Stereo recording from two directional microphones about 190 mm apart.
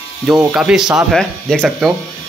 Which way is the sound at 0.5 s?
5° right (ahead or behind).